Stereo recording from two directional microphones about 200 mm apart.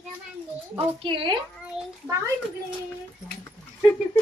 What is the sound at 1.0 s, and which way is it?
Speech, 25° right (ahead or behind).